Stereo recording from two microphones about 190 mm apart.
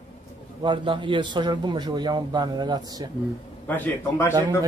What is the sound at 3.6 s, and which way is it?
Speech, 10° left (ahead or behind).